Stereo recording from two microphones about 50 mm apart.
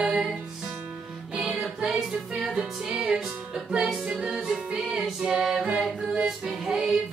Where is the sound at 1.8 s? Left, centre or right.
Centre.